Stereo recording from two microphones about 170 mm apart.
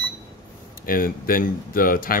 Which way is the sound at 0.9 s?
55° left (ahead or behind).